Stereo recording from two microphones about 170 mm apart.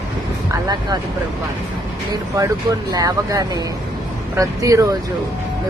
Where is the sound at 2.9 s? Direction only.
20° right (ahead or behind).